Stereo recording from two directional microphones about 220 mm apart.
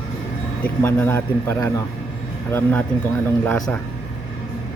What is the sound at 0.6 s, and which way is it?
A man's voice, 10° left (ahead or behind).